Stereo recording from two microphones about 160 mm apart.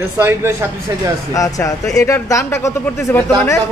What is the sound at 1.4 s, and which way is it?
Speech, 20° left (ahead or behind).